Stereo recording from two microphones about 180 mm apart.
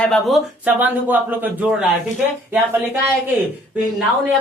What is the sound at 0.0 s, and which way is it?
A woman's voice, centre (ahead or behind).